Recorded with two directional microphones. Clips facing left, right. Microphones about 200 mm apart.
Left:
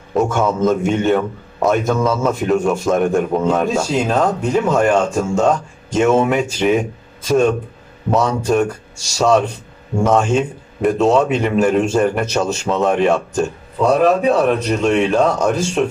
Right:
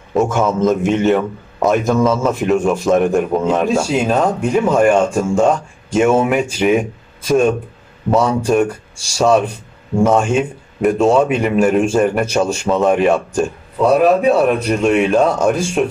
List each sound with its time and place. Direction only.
0.1 s a man's voice: 5° right (ahead or behind)
8.5 s a man's voice: 10° right (ahead or behind)